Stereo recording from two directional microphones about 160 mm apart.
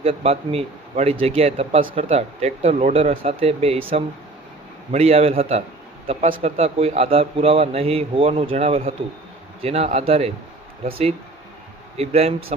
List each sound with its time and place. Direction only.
0.0 s a man's voice: 40° right (ahead or behind)